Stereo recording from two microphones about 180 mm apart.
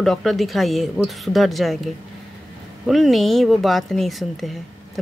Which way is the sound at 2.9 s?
Centre (ahead or behind).